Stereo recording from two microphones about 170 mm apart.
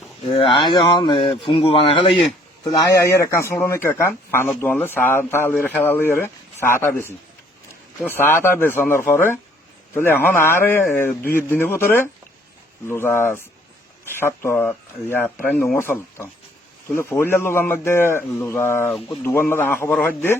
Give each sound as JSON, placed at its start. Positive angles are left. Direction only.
{"t": 0.7, "sound": "speech", "side_deg": 25}
{"t": 2.9, "sound": "speech", "side_deg": 15}